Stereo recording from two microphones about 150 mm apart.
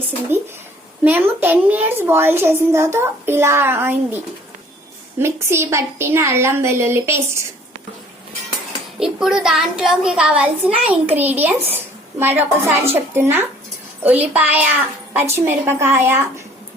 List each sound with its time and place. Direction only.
0.3 s a woman's voice: 15° right (ahead or behind)
5.2 s a woman's voice: 15° right (ahead or behind)
9.0 s a child's voice: 5° right (ahead or behind)